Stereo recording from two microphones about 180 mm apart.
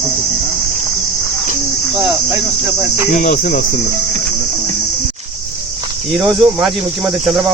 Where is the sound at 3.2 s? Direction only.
45° left (ahead or behind).